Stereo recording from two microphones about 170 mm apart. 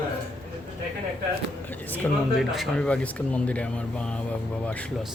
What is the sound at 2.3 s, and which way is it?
Speech, centre (ahead or behind).